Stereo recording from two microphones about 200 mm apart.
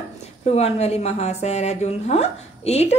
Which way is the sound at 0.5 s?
30° left (ahead or behind).